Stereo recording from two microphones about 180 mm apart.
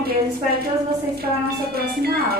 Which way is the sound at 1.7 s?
60° right (ahead or behind).